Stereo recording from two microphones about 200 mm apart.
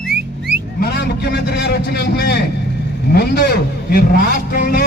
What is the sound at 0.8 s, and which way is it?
A man's voice, 55° left (ahead or behind).